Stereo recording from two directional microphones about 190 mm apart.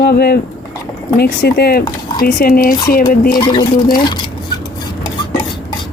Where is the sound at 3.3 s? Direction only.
25° left (ahead or behind).